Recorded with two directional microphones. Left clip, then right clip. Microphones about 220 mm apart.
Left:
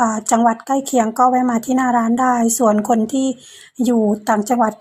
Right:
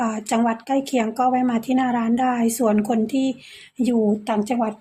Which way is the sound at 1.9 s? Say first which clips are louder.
Left 6 dB; 15° left (ahead or behind).